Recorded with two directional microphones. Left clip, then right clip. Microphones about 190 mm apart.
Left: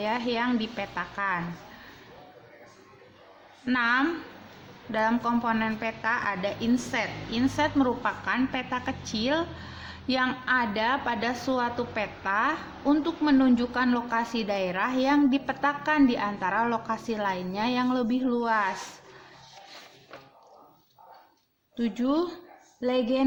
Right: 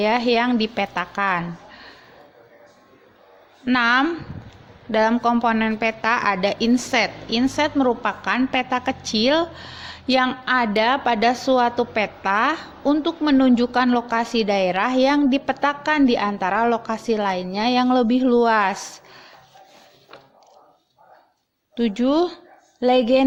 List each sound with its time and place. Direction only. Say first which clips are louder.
0.0 s a woman's voice: right 9 dB; 40° right (ahead or behind)
3.7 s a woman's voice: right 7 dB; 45° right (ahead or behind)
21.8 s a woman's voice: right 8 dB; 40° right (ahead or behind)